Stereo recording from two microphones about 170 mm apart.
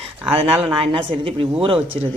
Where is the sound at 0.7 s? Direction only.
30° right (ahead or behind).